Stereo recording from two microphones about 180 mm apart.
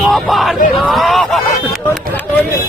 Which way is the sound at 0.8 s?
Centre (ahead or behind).